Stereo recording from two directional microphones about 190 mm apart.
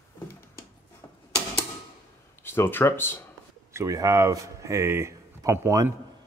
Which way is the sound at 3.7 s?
15° right (ahead or behind).